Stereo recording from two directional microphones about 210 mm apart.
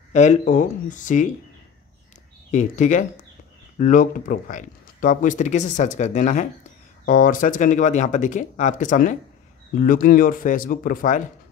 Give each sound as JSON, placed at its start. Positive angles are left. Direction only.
{"t": 0.1, "sound": "speech", "side_deg": 35}
{"t": 2.5, "sound": "speech", "side_deg": 35}